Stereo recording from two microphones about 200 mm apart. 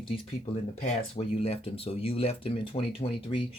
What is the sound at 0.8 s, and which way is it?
Speech, 35° left (ahead or behind).